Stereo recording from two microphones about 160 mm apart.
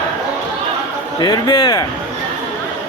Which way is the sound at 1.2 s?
25° left (ahead or behind).